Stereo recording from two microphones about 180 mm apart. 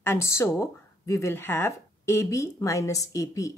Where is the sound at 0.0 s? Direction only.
15° left (ahead or behind).